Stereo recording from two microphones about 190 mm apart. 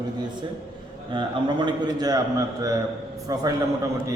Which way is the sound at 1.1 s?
25° right (ahead or behind).